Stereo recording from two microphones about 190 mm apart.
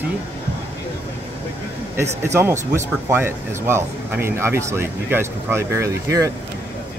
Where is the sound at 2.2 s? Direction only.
15° right (ahead or behind).